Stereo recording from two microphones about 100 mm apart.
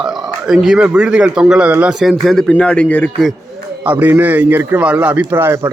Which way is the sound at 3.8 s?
15° right (ahead or behind).